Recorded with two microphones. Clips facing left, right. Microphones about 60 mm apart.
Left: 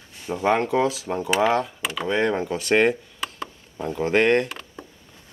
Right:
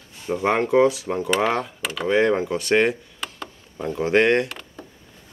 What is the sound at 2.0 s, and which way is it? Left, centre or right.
Speech, centre.